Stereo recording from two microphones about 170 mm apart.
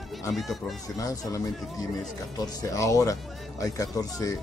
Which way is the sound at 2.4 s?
20° left (ahead or behind).